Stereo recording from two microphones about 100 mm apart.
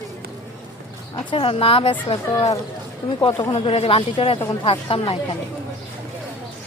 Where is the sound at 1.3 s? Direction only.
65° left (ahead or behind).